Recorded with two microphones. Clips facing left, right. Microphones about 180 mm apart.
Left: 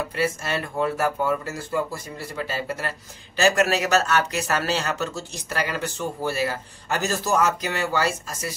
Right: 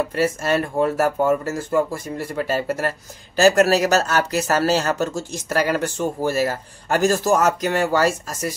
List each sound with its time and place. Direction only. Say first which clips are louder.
0.1 s speech: right 5 dB; 45° right (ahead or behind)